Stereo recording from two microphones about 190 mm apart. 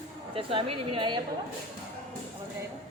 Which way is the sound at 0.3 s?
30° right (ahead or behind).